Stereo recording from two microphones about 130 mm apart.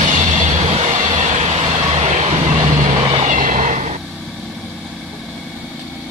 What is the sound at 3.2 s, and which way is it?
Vehicle, 80° right.